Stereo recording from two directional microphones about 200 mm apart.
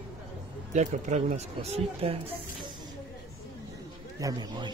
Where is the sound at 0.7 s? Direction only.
35° right (ahead or behind).